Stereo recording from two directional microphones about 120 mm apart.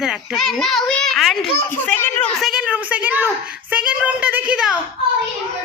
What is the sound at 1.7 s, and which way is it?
Speech, 15° left (ahead or behind).